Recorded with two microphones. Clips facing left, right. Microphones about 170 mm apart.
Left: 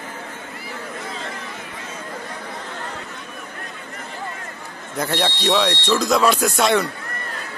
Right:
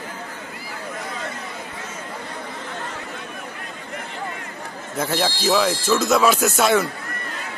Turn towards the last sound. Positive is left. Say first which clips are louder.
# even
turn(degrees=0)  # may be behind; listen again after turning